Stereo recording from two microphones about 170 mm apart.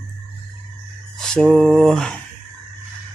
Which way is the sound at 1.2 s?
5° left (ahead or behind).